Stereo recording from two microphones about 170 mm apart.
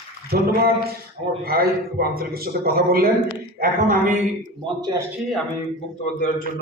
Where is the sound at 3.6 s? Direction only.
50° right (ahead or behind).